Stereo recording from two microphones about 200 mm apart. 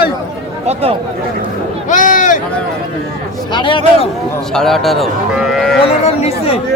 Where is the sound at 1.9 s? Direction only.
40° left (ahead or behind).